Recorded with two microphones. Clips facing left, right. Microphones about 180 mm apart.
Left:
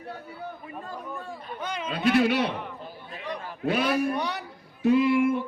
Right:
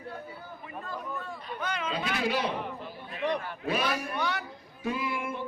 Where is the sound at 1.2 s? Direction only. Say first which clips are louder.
Left 1 dB; 35° left (ahead or behind).